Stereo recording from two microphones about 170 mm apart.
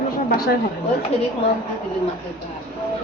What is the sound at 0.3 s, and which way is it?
Speech, 60° left (ahead or behind).